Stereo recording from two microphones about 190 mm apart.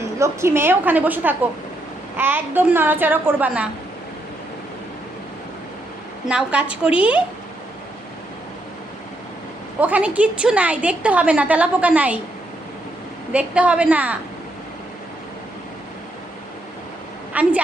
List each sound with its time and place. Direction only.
0.2 s a woman's voice: 15° right (ahead or behind)
6.2 s a woman's voice: 5° right (ahead or behind)
9.8 s a woman's voice: 5° right (ahead or behind)
13.3 s a woman's voice: 5° right (ahead or behind)
17.3 s a woman's voice: 10° right (ahead or behind)